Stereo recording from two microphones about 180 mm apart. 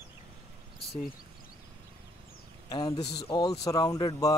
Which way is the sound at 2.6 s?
20° left (ahead or behind).